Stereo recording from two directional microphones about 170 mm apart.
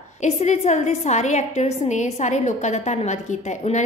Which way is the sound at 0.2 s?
40° left (ahead or behind).